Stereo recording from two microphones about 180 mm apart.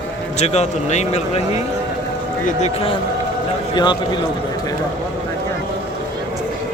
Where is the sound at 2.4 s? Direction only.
35° left (ahead or behind).